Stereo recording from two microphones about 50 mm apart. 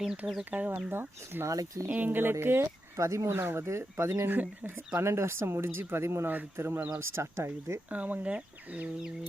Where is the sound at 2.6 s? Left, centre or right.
Right.